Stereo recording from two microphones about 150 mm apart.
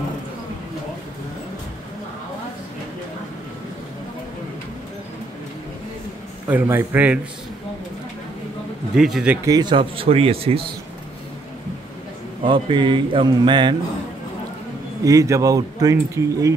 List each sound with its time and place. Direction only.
6.5 s a man's voice: 15° right (ahead or behind)
8.9 s speech: 5° right (ahead or behind)
9.5 s speech: 30° right (ahead or behind)
12.4 s speech: 35° right (ahead or behind)
15.0 s speech: 20° right (ahead or behind)